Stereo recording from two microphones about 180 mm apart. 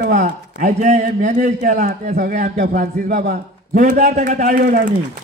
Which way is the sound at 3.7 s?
40° right (ahead or behind).